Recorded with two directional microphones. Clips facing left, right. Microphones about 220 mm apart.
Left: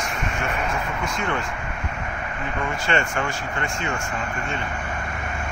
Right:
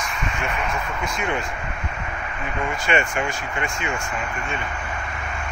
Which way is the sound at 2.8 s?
15° right (ahead or behind).